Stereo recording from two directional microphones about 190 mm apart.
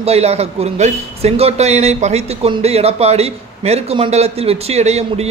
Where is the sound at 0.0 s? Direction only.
35° right (ahead or behind).